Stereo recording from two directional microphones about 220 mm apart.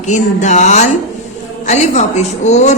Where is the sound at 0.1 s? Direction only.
35° left (ahead or behind).